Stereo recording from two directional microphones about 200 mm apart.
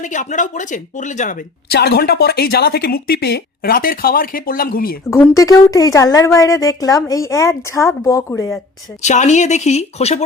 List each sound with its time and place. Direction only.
0.0 s speech: 40° left (ahead or behind)
5.1 s a woman's voice: 15° left (ahead or behind)
9.0 s speech: 35° left (ahead or behind)